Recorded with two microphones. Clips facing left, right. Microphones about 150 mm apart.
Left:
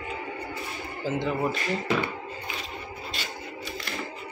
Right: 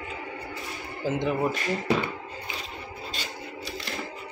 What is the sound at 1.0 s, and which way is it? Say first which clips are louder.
Speech: right 1 dB; 15° right (ahead or behind).